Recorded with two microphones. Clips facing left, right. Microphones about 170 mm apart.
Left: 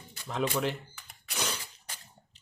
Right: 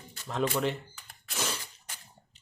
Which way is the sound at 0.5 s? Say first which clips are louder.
Right 1 dB; centre (ahead or behind).